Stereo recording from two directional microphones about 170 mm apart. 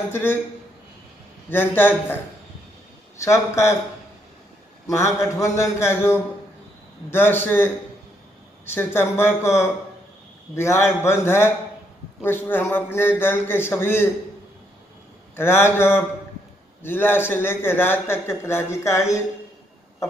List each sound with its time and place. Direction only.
0.1 s a man's voice: 10° left (ahead or behind)
1.5 s a man's voice: 10° left (ahead or behind)
3.2 s a man's voice: 15° left (ahead or behind)
4.8 s a man's voice: 15° left (ahead or behind)
15.3 s a man's voice: 15° left (ahead or behind)